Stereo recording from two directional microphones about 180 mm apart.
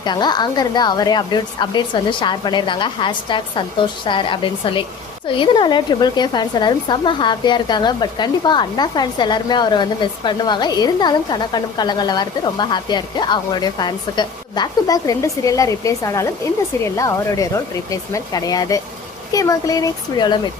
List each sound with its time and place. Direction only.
0.0 s speech: 25° left (ahead or behind)